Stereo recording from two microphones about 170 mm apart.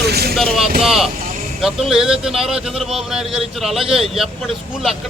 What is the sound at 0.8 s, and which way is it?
A man's voice, centre (ahead or behind).